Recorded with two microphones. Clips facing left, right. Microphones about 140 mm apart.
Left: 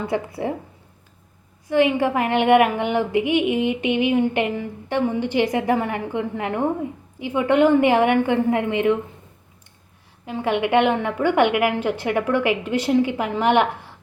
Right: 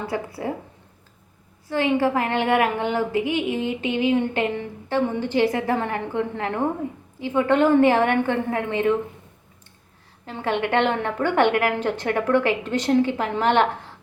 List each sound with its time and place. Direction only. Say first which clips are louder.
0.1 s a woman's voice: left 3 dB; 20° left (ahead or behind)
1.6 s a woman's voice: left 3 dB; 15° left (ahead or behind)
10.2 s a woman's voice: left 3 dB; 15° left (ahead or behind)